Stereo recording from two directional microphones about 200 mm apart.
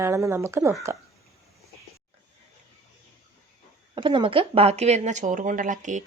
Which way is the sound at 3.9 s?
25° right (ahead or behind).